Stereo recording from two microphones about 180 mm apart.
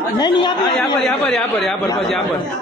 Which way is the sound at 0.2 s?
25° left (ahead or behind).